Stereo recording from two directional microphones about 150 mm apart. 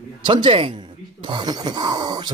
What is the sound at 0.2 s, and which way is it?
Speech, 30° right (ahead or behind).